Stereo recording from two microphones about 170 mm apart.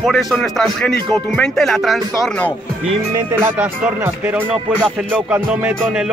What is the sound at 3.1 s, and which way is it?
Speech, 15° right (ahead or behind).